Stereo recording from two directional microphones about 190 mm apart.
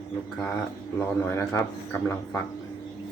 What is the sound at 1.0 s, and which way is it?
Speech, 10° left (ahead or behind).